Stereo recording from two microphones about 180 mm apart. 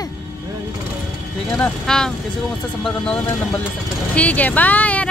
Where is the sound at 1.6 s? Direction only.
5° left (ahead or behind).